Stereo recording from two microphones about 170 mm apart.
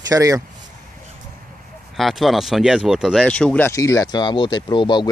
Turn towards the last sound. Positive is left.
turn(degrees=25)  # may be behind; listen again after turning